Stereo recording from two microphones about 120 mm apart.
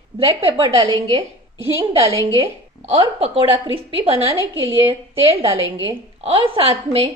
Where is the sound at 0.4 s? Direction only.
50° right (ahead or behind).